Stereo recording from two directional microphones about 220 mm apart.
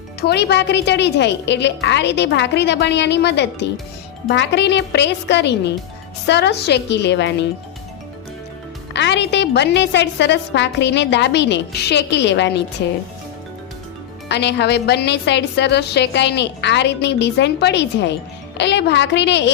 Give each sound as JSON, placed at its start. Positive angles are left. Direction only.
{"t": 0.2, "sound": "a woman's voice", "side_deg": 50}
{"t": 8.9, "sound": "a woman's voice", "side_deg": 55}
{"t": 14.3, "sound": "a woman's voice", "side_deg": 50}